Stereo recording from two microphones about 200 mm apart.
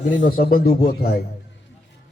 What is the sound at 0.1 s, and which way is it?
Speech, 45° left (ahead or behind).